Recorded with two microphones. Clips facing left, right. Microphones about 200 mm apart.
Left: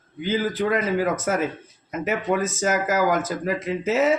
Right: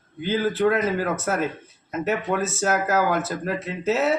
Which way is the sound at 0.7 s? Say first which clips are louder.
Left 1 dB; 10° left (ahead or behind).